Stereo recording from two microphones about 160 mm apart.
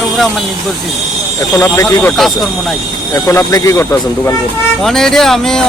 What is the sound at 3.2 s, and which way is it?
Speech, 20° left (ahead or behind).